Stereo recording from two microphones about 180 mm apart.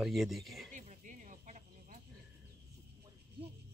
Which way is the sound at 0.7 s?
45° right (ahead or behind).